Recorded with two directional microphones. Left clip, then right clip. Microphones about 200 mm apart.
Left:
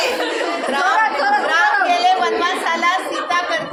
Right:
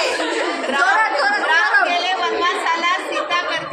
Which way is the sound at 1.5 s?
15° left (ahead or behind).